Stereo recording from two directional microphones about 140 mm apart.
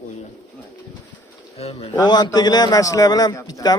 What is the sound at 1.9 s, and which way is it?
A man's voice, 30° left (ahead or behind).